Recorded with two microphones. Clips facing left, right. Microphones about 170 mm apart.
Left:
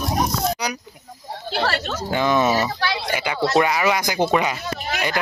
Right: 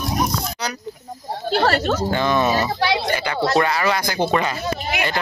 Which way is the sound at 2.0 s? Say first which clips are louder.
Left 4 dB; 10° left (ahead or behind).